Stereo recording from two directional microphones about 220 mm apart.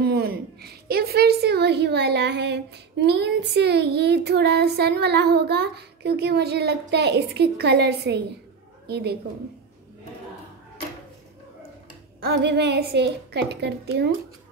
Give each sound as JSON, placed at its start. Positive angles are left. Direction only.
{"t": 0.0, "sound": "a woman's voice", "side_deg": -45}
{"t": 12.2, "sound": "a woman's voice", "side_deg": -45}